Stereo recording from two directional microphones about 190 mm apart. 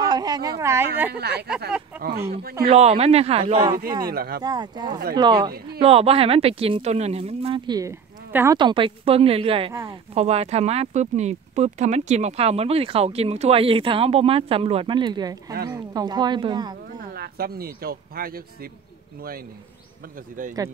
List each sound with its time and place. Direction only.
0.0 s speech: 20° right (ahead or behind)
1.1 s speech: 60° right (ahead or behind)
2.7 s speech: 35° right (ahead or behind)
4.1 s speech: 55° right (ahead or behind)
4.4 s speech: 20° right (ahead or behind)
8.3 s speech: 10° right (ahead or behind)
8.5 s speech: 25° right (ahead or behind)
17.1 s speech: 55° right (ahead or behind)